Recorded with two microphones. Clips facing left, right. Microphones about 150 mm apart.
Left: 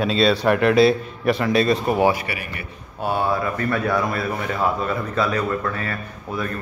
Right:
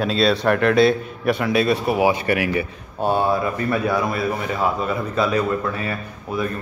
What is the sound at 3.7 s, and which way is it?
A man's voice, 15° right (ahead or behind).